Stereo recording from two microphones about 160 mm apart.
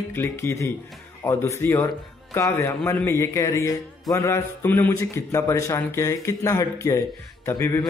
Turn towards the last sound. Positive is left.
turn(degrees=20)  # may be behind; listen again after turning